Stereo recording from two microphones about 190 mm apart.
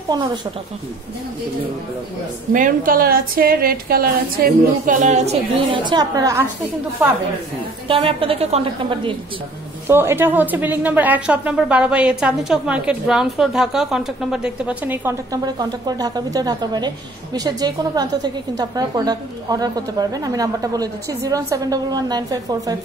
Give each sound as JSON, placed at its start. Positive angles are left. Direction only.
{"t": 0.1, "sound": "a woman's voice", "side_deg": -20}
{"t": 2.5, "sound": "a woman's voice", "side_deg": -45}
{"t": 5.9, "sound": "a woman's voice", "side_deg": -20}
{"t": 7.9, "sound": "a woman's voice", "side_deg": -30}
{"t": 9.8, "sound": "speech", "side_deg": -15}